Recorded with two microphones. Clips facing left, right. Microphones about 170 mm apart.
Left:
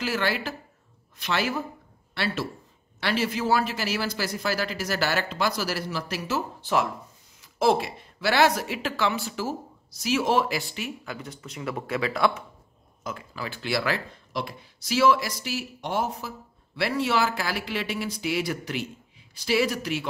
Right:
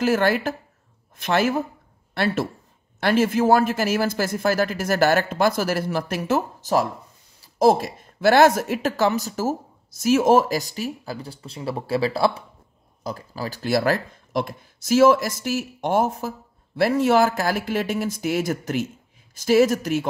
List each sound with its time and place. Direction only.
0.0 s speech: 50° right (ahead or behind)